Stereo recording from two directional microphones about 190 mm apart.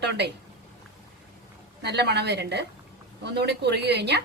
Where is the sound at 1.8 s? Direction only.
65° right (ahead or behind).